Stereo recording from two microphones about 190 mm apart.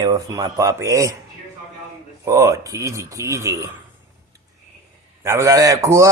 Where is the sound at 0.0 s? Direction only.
20° right (ahead or behind).